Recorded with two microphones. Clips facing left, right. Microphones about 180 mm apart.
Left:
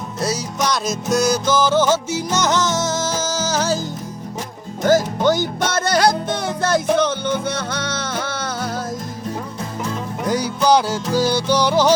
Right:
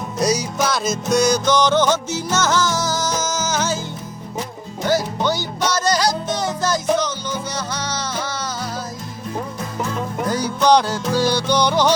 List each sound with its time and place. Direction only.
0.2 s music: 15° right (ahead or behind)
0.6 s music: centre (ahead or behind); by 3.8 s 35° left (ahead or behind)
4.8 s music: 45° left (ahead or behind)
10.2 s music: 10° left (ahead or behind)